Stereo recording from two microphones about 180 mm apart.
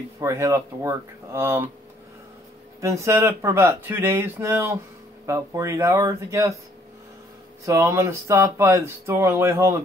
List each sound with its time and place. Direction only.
0.2 s speech: 15° right (ahead or behind)
2.8 s speech: 15° right (ahead or behind)
7.6 s speech: 15° right (ahead or behind)